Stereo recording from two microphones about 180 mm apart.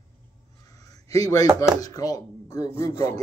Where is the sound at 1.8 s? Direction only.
20° left (ahead or behind).